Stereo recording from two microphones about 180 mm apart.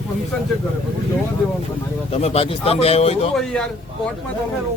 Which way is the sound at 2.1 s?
35° left (ahead or behind).